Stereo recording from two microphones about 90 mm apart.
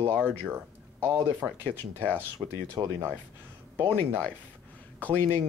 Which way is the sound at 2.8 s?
25° right (ahead or behind).